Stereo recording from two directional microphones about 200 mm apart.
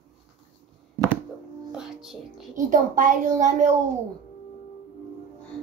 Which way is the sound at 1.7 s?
5° right (ahead or behind).